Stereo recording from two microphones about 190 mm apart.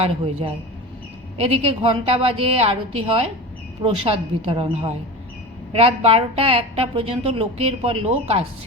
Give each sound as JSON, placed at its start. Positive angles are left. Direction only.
{"t": 0.0, "sound": "a woman's voice", "side_deg": -30}